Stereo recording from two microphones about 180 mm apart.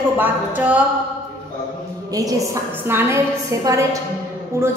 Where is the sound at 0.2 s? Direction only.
10° right (ahead or behind).